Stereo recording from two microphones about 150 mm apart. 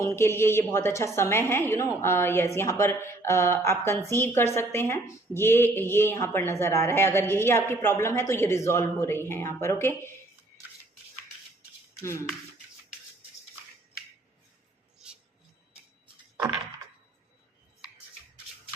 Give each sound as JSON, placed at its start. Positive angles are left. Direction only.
{"t": 0.0, "sound": "a woman's voice", "side_deg": 15}